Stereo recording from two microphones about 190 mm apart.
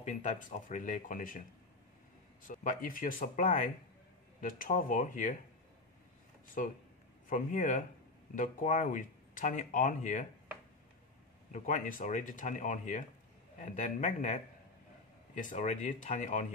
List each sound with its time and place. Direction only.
0.0 s speech: 40° left (ahead or behind)
2.4 s speech: 45° left (ahead or behind)
6.6 s speech: 40° left (ahead or behind)
11.5 s speech: 40° left (ahead or behind)